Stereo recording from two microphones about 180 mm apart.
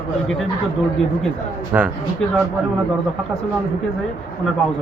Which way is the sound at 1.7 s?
10° right (ahead or behind).